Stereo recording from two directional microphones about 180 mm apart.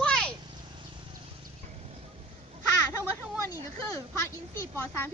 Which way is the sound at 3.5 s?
15° left (ahead or behind).